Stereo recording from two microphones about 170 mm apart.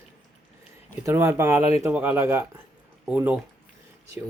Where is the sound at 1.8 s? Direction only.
10° right (ahead or behind).